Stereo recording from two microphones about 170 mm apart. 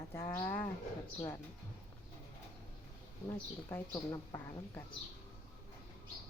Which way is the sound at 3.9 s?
20° left (ahead or behind).